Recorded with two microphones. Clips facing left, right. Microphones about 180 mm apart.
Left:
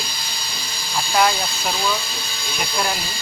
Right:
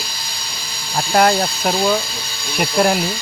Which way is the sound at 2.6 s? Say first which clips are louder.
Right 9 dB; 60° right (ahead or behind).